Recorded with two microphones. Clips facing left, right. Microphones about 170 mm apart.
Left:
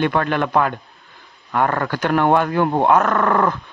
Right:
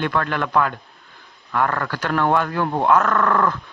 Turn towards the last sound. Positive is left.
turn(degrees=20)  # may be behind; listen again after turning